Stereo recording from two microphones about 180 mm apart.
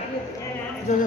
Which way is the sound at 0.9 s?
40° left (ahead or behind).